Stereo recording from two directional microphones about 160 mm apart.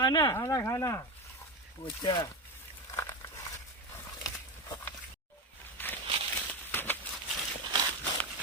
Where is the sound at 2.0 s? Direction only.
25° left (ahead or behind).